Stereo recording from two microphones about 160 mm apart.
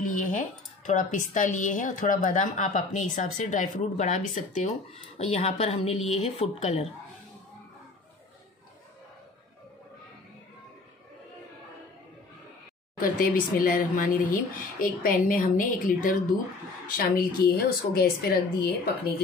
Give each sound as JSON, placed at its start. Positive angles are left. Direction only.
{"t": 0.0, "sound": "speech", "side_deg": 55}
{"t": 13.0, "sound": "a woman's voice", "side_deg": 65}